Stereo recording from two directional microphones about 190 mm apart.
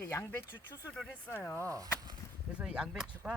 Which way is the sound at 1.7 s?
20° right (ahead or behind).